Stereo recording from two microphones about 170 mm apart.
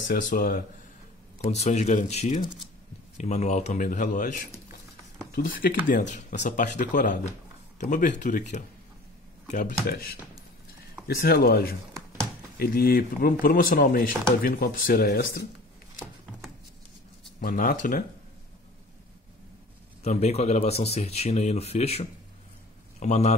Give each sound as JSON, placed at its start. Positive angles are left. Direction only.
{"t": 0.1, "sound": "speech", "side_deg": 55}
{"t": 1.5, "sound": "speech", "side_deg": 40}
{"t": 17.4, "sound": "speech", "side_deg": 55}
{"t": 20.0, "sound": "a man's voice", "side_deg": 40}